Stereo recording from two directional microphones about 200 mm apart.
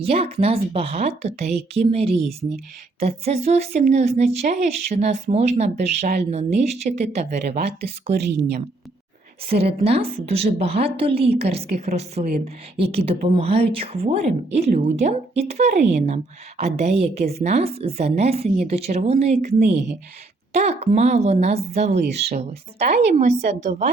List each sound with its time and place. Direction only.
0.0 s speech: 30° right (ahead or behind)
8.1 s a woman's voice: 55° right (ahead or behind)
9.5 s a woman's voice: 30° right (ahead or behind)
19.7 s a woman's voice: 60° right (ahead or behind)
20.5 s speech: 35° right (ahead or behind)
22.0 s a woman's voice: 55° right (ahead or behind)
22.3 s speech: 30° right (ahead or behind)